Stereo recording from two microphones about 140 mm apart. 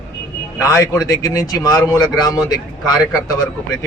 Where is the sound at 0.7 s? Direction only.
25° left (ahead or behind).